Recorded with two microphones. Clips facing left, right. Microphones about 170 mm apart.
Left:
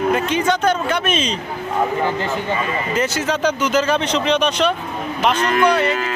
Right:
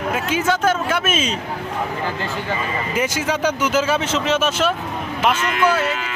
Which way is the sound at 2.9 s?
10° right (ahead or behind).